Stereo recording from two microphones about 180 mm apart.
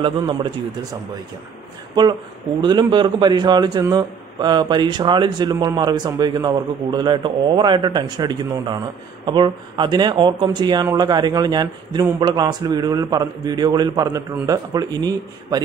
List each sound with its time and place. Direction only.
0.0 s speech: 25° right (ahead or behind)
2.6 s speech: 25° right (ahead or behind)